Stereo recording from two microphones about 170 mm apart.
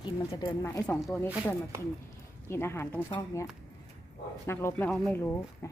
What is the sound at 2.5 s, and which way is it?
Speech, 15° left (ahead or behind).